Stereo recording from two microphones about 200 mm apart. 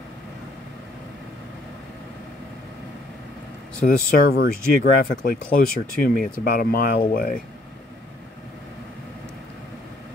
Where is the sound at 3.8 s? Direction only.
45° left (ahead or behind).